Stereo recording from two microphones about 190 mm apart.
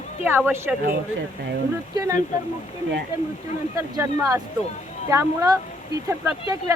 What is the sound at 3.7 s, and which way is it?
Speech, 15° right (ahead or behind).